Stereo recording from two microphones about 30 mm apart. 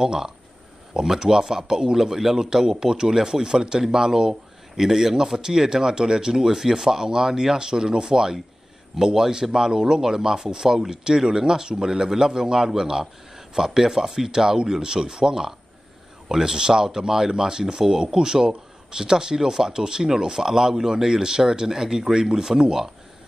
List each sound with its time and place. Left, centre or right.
0.0 s speech: right